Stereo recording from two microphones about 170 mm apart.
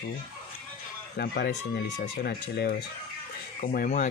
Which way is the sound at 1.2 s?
70° left (ahead or behind).